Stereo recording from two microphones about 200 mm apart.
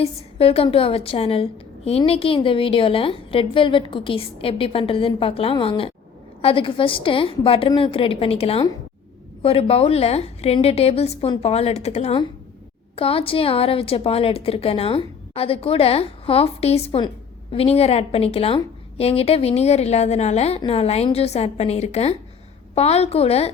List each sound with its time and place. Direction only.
0.0 s a woman's voice: 30° left (ahead or behind)